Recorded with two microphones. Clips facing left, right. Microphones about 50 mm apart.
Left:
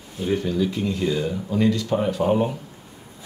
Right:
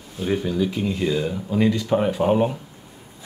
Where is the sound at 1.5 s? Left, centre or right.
Centre.